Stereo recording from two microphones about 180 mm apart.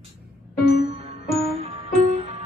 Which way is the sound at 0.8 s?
35° right (ahead or behind).